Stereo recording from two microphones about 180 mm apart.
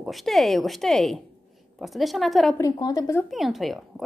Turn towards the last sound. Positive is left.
turn(degrees=0)  # may be behind; listen again after turning